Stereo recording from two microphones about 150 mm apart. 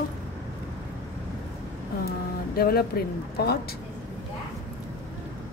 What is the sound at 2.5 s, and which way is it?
Speech, 85° left.